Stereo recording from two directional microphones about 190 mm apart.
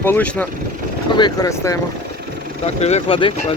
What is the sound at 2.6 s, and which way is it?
Speech, 35° left (ahead or behind).